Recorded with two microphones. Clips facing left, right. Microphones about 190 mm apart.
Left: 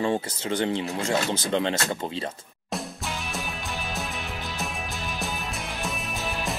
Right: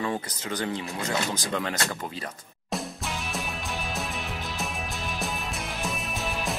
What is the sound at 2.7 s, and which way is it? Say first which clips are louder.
Music: even; centre (ahead or behind).